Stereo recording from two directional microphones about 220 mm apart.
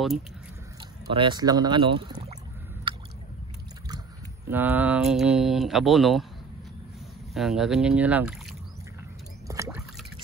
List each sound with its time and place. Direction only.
1.1 s speech: 20° right (ahead or behind)
4.5 s speech: 10° right (ahead or behind)
7.3 s speech: centre (ahead or behind)
9.5 s a sound: 15° right (ahead or behind)